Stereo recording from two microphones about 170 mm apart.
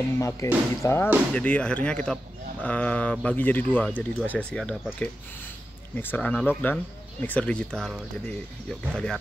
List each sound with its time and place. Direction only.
0.2 s speech: 20° left (ahead or behind)